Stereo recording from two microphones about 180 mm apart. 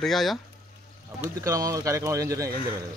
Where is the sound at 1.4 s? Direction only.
20° right (ahead or behind).